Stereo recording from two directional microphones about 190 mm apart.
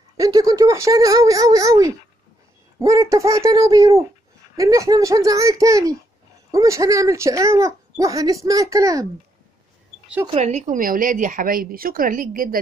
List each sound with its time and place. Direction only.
0.2 s speech: 20° right (ahead or behind)
10.2 s speech: 35° right (ahead or behind)